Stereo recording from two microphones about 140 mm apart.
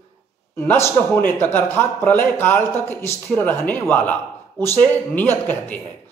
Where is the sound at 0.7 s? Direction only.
15° left (ahead or behind).